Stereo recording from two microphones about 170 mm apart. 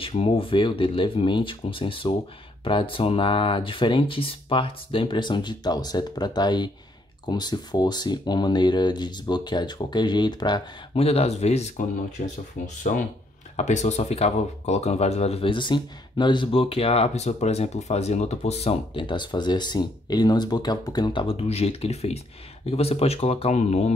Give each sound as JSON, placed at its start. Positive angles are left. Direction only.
{"t": 0.0, "sound": "speech", "side_deg": 35}
{"t": 12.2, "sound": "speech", "side_deg": 50}